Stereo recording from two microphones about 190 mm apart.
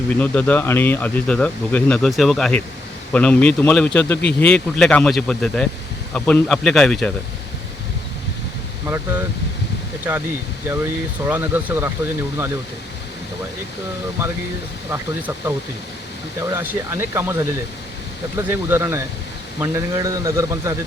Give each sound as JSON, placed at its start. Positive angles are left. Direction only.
{"t": 0.2, "sound": "speech", "side_deg": 10}
{"t": 10.0, "sound": "speech", "side_deg": -10}
{"t": 14.8, "sound": "speech", "side_deg": -10}